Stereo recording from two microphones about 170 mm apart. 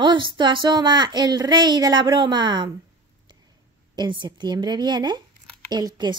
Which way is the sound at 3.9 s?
25° right (ahead or behind).